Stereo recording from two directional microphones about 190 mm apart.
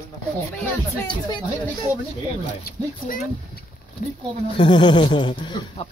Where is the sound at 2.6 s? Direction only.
55° left (ahead or behind).